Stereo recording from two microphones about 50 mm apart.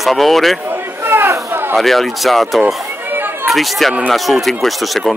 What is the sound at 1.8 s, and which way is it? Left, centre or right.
Speech, centre.